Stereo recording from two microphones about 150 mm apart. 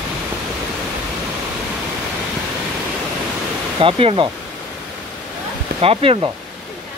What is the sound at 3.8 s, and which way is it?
Speech, 40° right (ahead or behind).